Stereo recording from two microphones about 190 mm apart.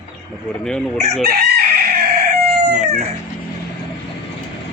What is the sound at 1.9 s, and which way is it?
Fowl, 55° right (ahead or behind).